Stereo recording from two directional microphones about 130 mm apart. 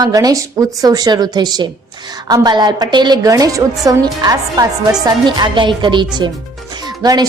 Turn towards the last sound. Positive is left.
turn(degrees=-30)  # may be behind; listen again after turning